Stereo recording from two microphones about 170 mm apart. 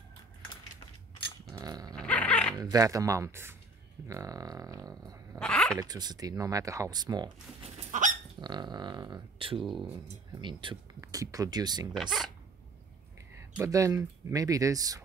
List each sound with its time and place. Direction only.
1.5 s dog: 20° right (ahead or behind)
2.0 s dog: 10° left (ahead or behind)
2.6 s speech: 20° right (ahead or behind)
5.4 s speech: 5° left (ahead or behind)
5.8 s speech: 25° right (ahead or behind)
7.9 s dog: 50° right (ahead or behind)
8.4 s speech: 25° right (ahead or behind)
11.9 s speech: centre (ahead or behind)
13.4 s speech: 15° right (ahead or behind)